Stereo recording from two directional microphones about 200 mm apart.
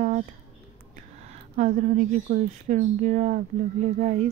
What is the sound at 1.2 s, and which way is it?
Speech, 35° right (ahead or behind).